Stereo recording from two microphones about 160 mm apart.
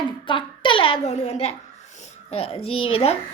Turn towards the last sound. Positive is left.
turn(degrees=35)  # may be behind; listen again after turning